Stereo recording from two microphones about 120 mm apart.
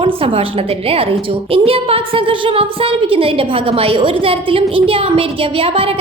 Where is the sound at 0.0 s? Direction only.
50° right (ahead or behind).